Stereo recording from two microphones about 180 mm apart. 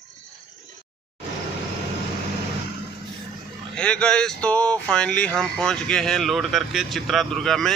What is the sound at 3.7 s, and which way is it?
Speech, 5° left (ahead or behind).